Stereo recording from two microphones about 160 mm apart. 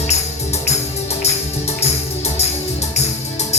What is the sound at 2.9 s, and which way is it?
Music, 45° left (ahead or behind).